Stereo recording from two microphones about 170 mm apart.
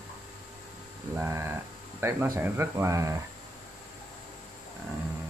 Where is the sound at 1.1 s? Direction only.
15° right (ahead or behind).